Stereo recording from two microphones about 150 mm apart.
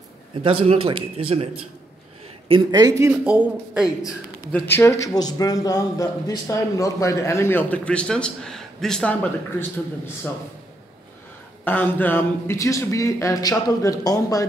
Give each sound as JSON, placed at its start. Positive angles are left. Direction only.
{"t": 0.4, "sound": "speech", "side_deg": -35}
{"t": 2.7, "sound": "speech", "side_deg": -25}
{"t": 3.1, "sound": "speech", "side_deg": -10}
{"t": 4.5, "sound": "a man's voice", "side_deg": 10}
{"t": 11.6, "sound": "speech", "side_deg": 10}